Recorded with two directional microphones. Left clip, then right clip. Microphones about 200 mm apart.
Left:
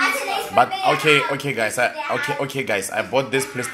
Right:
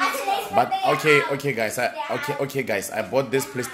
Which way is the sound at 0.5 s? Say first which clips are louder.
Left 4 dB; 20° right (ahead or behind).